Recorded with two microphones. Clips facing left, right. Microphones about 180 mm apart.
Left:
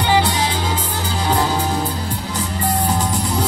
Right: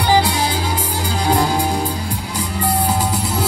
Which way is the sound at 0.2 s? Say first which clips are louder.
Right 1 dB; 10° right (ahead or behind).